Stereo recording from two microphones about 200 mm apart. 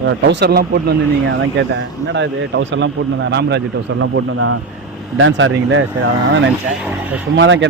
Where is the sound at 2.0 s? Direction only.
65° right (ahead or behind); by 4.6 s 90° right.